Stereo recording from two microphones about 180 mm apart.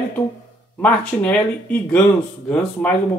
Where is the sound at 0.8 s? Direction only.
5° left (ahead or behind).